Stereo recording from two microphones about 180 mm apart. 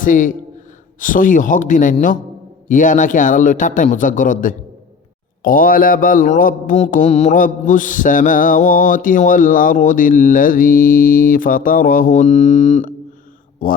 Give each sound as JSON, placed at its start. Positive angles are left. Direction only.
{"t": 0.0, "sound": "mantra", "side_deg": 45}